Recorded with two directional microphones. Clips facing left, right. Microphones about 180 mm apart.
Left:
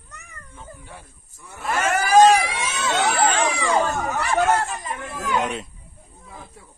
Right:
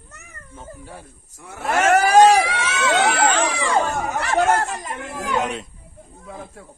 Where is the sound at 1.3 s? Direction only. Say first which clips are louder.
Right 4 dB; 75° right (ahead or behind).